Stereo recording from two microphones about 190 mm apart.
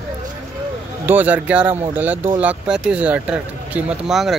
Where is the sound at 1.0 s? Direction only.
10° right (ahead or behind).